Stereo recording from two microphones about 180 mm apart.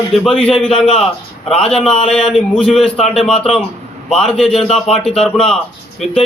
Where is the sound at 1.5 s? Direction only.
5° left (ahead or behind).